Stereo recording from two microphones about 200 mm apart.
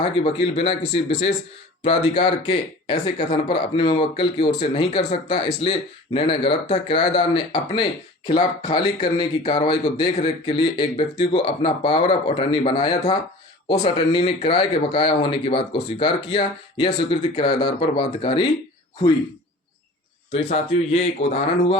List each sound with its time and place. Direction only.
0.0 s speech: 30° left (ahead or behind)
13.7 s speech: 35° left (ahead or behind)
20.3 s speech: 30° left (ahead or behind)